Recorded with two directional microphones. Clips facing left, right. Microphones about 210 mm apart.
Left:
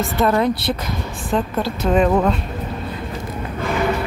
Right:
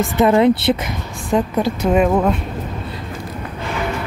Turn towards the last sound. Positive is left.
turn(degrees=-10)  # may be behind; listen again after turning